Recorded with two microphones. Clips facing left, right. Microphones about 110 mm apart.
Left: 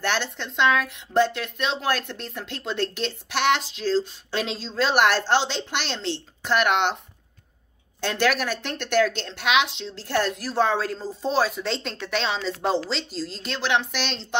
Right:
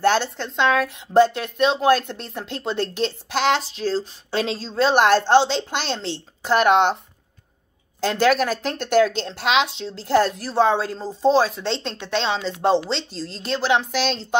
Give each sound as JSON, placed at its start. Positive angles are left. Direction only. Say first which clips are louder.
{"t": 0.0, "sound": "a woman's voice", "louder": "right 7 dB", "side_deg": -35}
{"t": 8.2, "sound": "a woman's voice", "louder": "right 5 dB", "side_deg": -35}
{"t": 13.4, "sound": "a woman's voice", "louder": "right 5 dB", "side_deg": -35}